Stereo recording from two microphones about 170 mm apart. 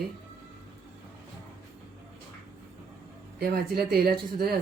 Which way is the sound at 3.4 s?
65° right (ahead or behind).